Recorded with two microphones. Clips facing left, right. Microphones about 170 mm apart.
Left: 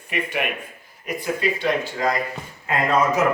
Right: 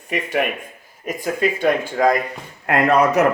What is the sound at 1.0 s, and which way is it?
Speech, 45° right (ahead or behind).